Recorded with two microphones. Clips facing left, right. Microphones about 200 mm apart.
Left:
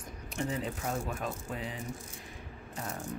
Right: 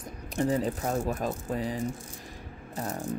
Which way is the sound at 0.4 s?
40° right (ahead or behind).